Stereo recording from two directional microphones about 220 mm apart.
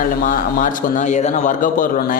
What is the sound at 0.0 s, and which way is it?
A man's voice, 40° left (ahead or behind).